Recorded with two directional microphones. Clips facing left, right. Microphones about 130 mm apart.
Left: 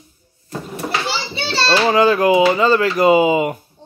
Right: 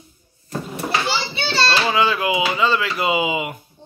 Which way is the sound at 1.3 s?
35° left (ahead or behind).